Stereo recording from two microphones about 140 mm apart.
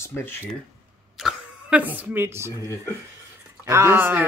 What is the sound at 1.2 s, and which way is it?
Speech, 5° right (ahead or behind).